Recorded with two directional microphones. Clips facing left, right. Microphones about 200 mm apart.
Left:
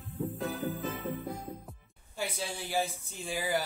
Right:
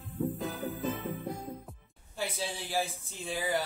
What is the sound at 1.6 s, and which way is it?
Speech, centre (ahead or behind).